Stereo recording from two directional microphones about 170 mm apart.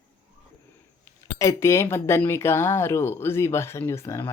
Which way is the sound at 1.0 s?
15° left (ahead or behind).